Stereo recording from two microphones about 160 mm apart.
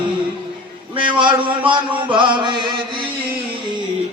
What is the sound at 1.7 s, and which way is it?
Mantra, 30° right (ahead or behind).